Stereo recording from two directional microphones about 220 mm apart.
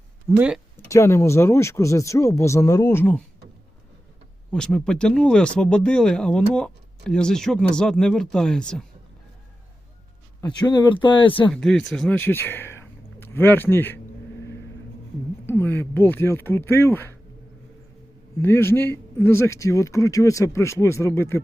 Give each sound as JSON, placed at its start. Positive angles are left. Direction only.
{"t": 0.3, "sound": "speech", "side_deg": -5}
{"t": 0.9, "sound": "a man's voice", "side_deg": 10}
{"t": 4.5, "sound": "speech", "side_deg": 5}
{"t": 10.4, "sound": "speech", "side_deg": 20}
{"t": 11.5, "sound": "speech", "side_deg": 0}
{"t": 15.4, "sound": "a man's voice", "side_deg": 10}
{"t": 18.3, "sound": "a man's voice", "side_deg": 10}